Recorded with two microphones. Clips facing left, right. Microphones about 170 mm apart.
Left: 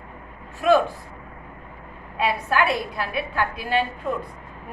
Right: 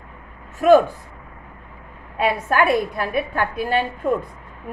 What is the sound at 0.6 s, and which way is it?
Speech, 45° right (ahead or behind).